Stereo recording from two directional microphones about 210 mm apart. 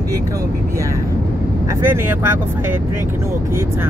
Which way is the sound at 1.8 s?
10° right (ahead or behind).